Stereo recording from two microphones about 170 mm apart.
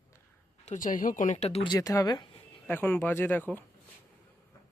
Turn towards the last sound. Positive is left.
turn(degrees=10)  # may be behind; listen again after turning